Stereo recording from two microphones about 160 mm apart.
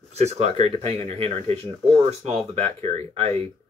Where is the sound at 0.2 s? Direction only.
45° right (ahead or behind).